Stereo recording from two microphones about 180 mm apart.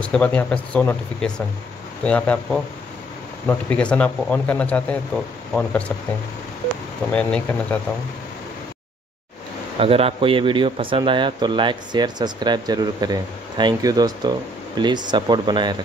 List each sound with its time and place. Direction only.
0.0 s speech: 5° left (ahead or behind)
7.1 s speech: 5° left (ahead or behind)
9.8 s speech: 30° right (ahead or behind)